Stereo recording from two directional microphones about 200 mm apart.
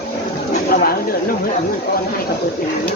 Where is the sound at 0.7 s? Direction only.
45° left (ahead or behind).